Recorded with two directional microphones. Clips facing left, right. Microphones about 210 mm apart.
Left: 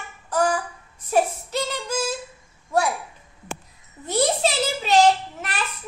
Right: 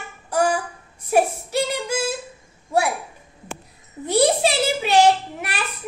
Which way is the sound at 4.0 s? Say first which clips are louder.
Right 4 dB; 10° right (ahead or behind).